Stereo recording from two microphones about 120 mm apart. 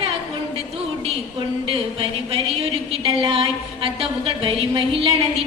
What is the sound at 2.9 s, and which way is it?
A woman's voice, 50° right (ahead or behind).